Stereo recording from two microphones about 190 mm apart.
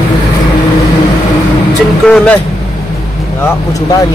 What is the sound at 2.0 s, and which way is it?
Speech, 5° left (ahead or behind).